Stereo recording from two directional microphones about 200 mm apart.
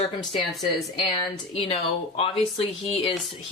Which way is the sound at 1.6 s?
30° left (ahead or behind).